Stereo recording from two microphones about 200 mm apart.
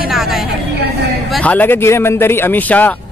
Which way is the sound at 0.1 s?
Centre (ahead or behind).